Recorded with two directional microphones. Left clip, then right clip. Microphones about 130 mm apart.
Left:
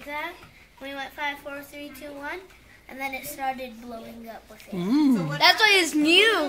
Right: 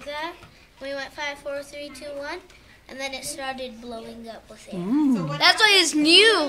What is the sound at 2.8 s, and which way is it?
Speech, 35° right (ahead or behind).